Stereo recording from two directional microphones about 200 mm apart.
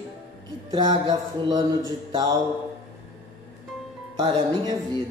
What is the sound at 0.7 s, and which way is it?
Speech, 20° right (ahead or behind).